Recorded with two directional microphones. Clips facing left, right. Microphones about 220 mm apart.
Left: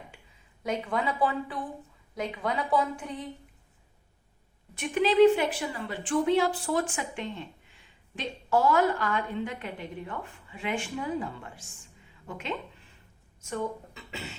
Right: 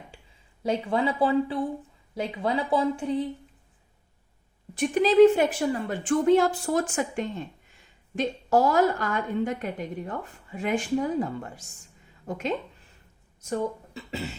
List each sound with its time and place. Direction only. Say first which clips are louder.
0.1 s a sound: right 3 dB; 30° right (ahead or behind)
0.6 s a woman's voice: right 5 dB; 30° right (ahead or behind)
4.7 s a woman's voice: right 4 dB; 35° right (ahead or behind)